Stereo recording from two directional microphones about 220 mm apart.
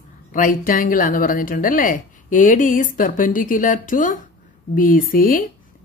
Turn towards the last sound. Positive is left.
turn(degrees=40)  # may be behind; listen again after turning